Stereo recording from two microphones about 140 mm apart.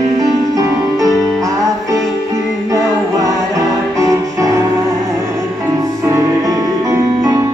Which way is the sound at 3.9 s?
25° right (ahead or behind).